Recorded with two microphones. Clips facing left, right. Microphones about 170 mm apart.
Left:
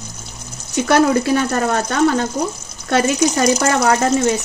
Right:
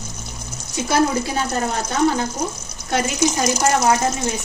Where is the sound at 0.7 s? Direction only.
65° left (ahead or behind); by 4.3 s 85° left.